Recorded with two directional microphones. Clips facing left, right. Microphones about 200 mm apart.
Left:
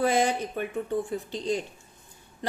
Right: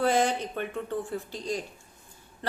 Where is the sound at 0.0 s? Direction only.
10° left (ahead or behind).